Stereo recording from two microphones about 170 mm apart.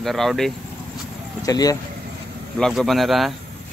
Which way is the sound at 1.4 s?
20° left (ahead or behind).